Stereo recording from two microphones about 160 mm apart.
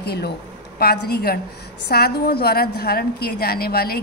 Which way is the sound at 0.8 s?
75° left (ahead or behind).